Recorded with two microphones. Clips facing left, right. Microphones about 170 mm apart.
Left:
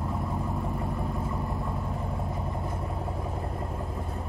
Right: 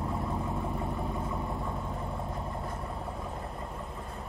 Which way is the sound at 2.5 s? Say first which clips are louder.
Left 3 dB; 20° left (ahead or behind).